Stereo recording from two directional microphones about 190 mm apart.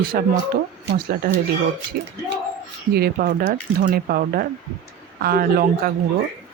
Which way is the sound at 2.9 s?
50° right (ahead or behind).